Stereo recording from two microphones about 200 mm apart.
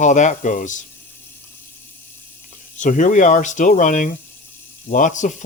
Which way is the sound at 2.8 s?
40° left (ahead or behind).